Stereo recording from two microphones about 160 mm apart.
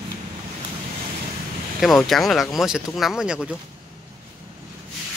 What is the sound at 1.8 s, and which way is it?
Speech, centre (ahead or behind).